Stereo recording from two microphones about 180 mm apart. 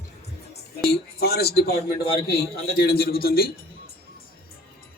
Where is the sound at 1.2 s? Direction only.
60° left (ahead or behind).